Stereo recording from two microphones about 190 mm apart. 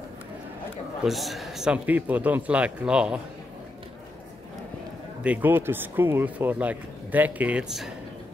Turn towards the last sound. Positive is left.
turn(degrees=-5)  # may be behind; listen again after turning